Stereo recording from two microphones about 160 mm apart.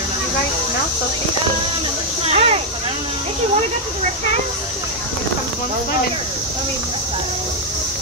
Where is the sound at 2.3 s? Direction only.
40° right (ahead or behind).